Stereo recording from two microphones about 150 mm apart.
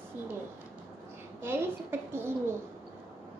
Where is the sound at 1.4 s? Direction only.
15° right (ahead or behind).